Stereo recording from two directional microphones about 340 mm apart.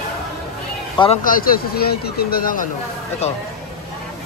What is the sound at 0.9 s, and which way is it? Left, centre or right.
Speech, centre.